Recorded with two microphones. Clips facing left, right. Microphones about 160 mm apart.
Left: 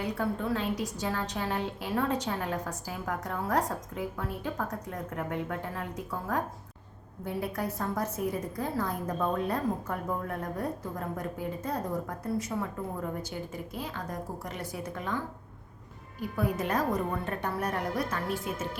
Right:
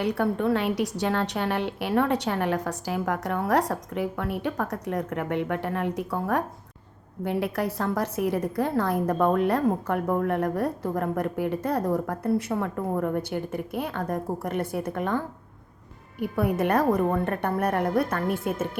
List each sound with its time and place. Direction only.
0.0 s a woman's voice: 70° right (ahead or behind)
7.3 s a woman's voice: 80° right; by 15.2 s 55° right (ahead or behind)
16.2 s a woman's voice: 60° right (ahead or behind)